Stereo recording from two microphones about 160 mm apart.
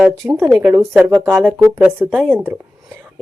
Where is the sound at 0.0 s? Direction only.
15° right (ahead or behind).